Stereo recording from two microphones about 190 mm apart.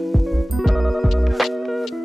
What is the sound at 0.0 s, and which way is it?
Music, centre (ahead or behind).